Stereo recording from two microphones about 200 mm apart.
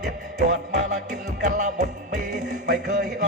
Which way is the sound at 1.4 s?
35° right (ahead or behind).